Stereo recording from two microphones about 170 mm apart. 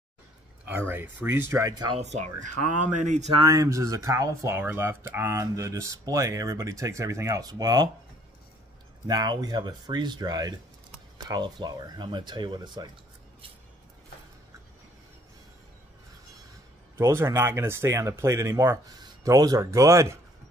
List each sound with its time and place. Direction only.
0.7 s speech: 10° right (ahead or behind)
2.1 s speech: 45° right (ahead or behind)
3.3 s speech: 20° right (ahead or behind)
9.0 s speech: 25° right (ahead or behind)
16.9 s speech: 15° right (ahead or behind)